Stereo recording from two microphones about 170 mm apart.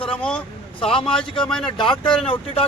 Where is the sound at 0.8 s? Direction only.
30° left (ahead or behind).